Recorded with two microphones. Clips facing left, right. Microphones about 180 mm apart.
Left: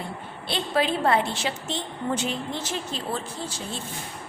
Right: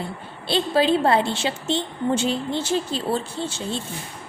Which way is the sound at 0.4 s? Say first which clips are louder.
Right 5 dB; 30° right (ahead or behind).